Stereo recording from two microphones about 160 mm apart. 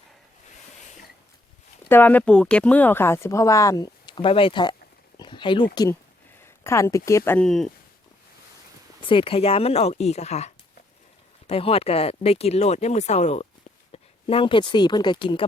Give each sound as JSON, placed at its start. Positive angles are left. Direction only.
{"t": 1.9, "sound": "speech", "side_deg": 10}
{"t": 6.4, "sound": "speech", "side_deg": 15}
{"t": 7.3, "sound": "speech", "side_deg": 5}
{"t": 9.0, "sound": "speech", "side_deg": 30}